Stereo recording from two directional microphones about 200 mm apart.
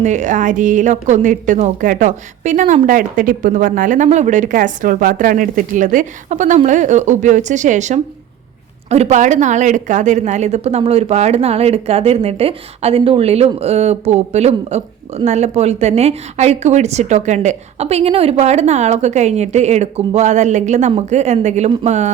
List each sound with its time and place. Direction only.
0.0 s a woman's voice: 35° right (ahead or behind)